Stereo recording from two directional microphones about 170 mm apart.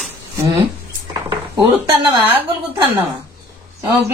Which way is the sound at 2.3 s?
15° right (ahead or behind).